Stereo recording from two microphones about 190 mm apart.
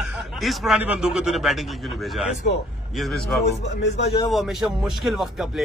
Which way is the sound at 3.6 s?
65° left (ahead or behind).